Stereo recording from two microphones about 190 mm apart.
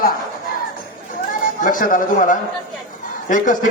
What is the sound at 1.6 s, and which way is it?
A man's voice, 45° left (ahead or behind).